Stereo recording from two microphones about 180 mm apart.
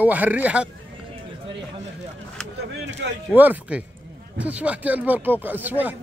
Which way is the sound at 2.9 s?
90° right.